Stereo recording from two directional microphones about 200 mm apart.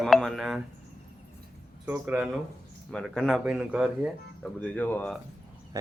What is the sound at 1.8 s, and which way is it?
Speech, 5° right (ahead or behind).